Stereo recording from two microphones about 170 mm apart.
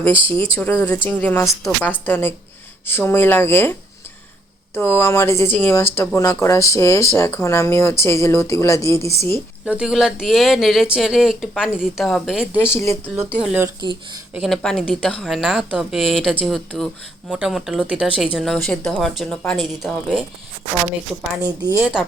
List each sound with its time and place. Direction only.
0.0 s speech: 30° right (ahead or behind)
0.6 s speech: 15° left (ahead or behind)
9.6 s speech: 5° right (ahead or behind)
12.6 s speech: 15° left (ahead or behind)
13.4 s speech: 10° right (ahead or behind)
21.4 s a woman's voice: 25° right (ahead or behind)
21.8 s speech: 10° right (ahead or behind)